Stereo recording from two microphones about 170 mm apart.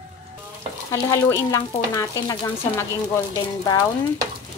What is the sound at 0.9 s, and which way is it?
Speech, 20° left (ahead or behind).